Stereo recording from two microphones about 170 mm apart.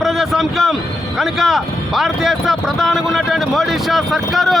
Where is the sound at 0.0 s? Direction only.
Centre (ahead or behind).